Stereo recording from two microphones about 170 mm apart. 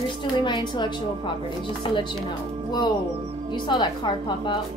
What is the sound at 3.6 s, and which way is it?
Speech, 25° left (ahead or behind).